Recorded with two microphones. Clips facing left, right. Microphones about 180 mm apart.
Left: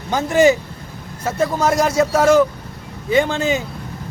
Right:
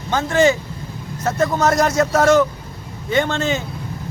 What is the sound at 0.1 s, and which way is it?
A man's voice, 15° left (ahead or behind).